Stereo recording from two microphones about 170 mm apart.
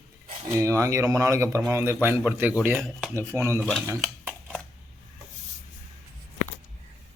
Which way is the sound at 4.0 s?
Centre (ahead or behind).